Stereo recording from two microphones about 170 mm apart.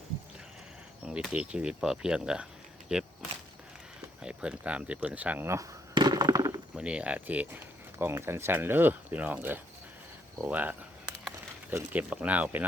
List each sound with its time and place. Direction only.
1.0 s speech: 5° right (ahead or behind)
4.2 s speech: 5° right (ahead or behind)
5.9 s fireworks: 25° right (ahead or behind)
6.7 s speech: 5° right (ahead or behind)